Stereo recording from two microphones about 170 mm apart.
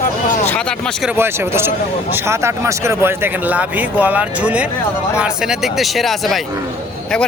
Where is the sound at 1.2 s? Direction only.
15° right (ahead or behind).